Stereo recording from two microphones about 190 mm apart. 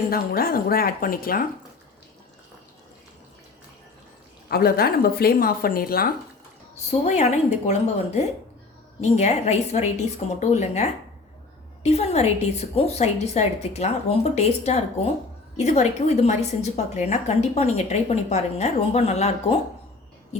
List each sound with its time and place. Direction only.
0.1 s a woman's voice: 50° left (ahead or behind)
4.4 s a woman's voice: 55° left (ahead or behind)
7.0 s a woman's voice: 35° left (ahead or behind)